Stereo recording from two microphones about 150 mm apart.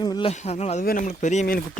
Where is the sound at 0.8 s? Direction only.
70° left (ahead or behind).